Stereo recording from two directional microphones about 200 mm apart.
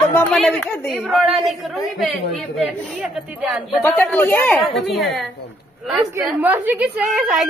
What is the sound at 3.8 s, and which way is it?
Speech, 10° left (ahead or behind).